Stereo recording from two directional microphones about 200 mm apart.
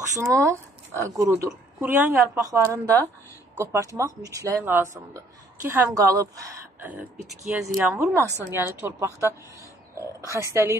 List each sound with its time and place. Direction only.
0.1 s a woman's voice: 15° right (ahead or behind)